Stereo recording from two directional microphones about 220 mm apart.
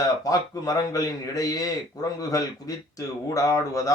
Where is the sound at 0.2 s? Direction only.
15° left (ahead or behind).